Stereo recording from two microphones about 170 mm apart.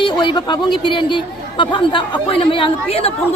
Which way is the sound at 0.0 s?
25° left (ahead or behind).